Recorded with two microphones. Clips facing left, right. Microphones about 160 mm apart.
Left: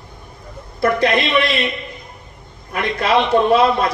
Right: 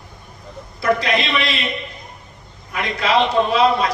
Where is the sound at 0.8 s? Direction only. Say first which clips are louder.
Left 3 dB; 55° left (ahead or behind).